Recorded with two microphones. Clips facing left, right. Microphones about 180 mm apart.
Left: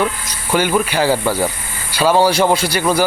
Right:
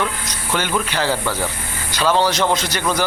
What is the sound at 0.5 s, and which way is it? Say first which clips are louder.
Speech: left 6 dB; 10° left (ahead or behind).